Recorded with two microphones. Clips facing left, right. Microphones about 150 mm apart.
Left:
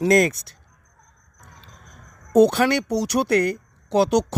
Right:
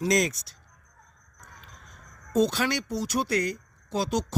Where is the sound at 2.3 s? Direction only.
60° left (ahead or behind).